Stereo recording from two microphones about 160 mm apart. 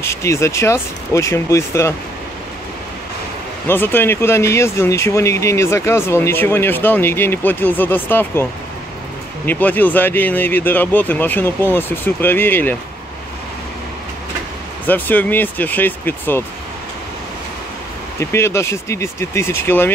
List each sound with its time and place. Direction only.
0.0 s speech: 15° left (ahead or behind)
3.6 s speech: 15° left (ahead or behind)
9.5 s speech: 10° left (ahead or behind)
14.9 s speech: 10° left (ahead or behind)
18.2 s speech: 15° left (ahead or behind)